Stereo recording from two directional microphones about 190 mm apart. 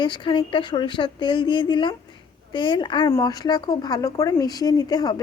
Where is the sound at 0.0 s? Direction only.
25° left (ahead or behind).